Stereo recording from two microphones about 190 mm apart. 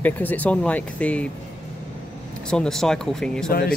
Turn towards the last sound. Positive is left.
turn(degrees=50)  # may be behind; listen again after turning